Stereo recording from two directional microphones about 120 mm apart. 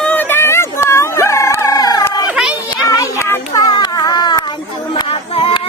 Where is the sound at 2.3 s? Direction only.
5° right (ahead or behind).